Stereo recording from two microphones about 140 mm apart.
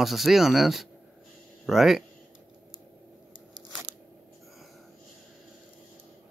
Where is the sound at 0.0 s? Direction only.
Centre (ahead or behind).